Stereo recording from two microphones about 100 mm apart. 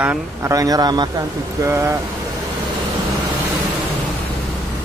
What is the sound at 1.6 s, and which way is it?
Speech, 30° right (ahead or behind).